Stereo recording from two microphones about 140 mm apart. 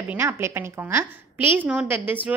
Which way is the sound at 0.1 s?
20° right (ahead or behind).